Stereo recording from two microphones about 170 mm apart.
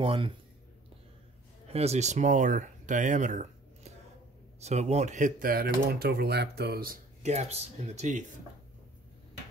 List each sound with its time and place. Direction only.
0.0 s speech: 30° right (ahead or behind)
1.7 s speech: 40° right (ahead or behind); by 7.0 s 65° right (ahead or behind)
7.2 s speech: 40° right (ahead or behind)